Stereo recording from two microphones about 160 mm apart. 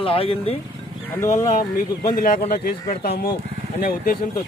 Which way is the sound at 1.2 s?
50° left (ahead or behind).